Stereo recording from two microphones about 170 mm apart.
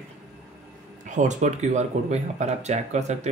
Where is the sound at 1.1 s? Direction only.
45° right (ahead or behind).